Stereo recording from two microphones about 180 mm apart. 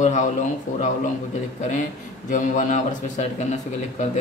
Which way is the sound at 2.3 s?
45° left (ahead or behind).